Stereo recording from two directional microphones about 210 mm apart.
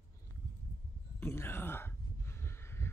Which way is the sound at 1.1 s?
10° left (ahead or behind).